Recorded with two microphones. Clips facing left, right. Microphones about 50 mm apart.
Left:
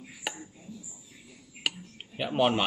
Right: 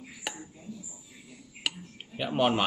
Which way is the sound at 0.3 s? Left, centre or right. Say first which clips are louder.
Left 1 dB; centre.